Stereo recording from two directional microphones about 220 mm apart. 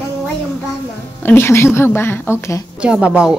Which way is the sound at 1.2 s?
10° left (ahead or behind).